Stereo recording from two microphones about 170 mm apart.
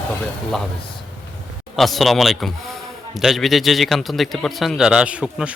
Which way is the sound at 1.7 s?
Centre (ahead or behind).